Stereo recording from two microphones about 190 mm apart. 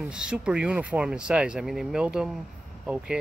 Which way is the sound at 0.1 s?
5° right (ahead or behind).